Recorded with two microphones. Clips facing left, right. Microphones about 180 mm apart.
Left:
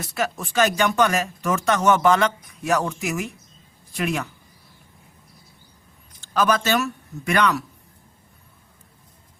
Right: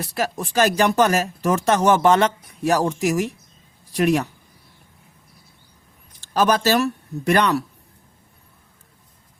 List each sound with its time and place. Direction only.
0.0 s speech: 35° right (ahead or behind)
6.3 s speech: 35° right (ahead or behind)